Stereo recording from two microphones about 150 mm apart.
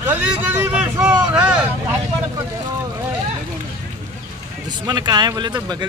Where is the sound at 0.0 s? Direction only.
10° right (ahead or behind).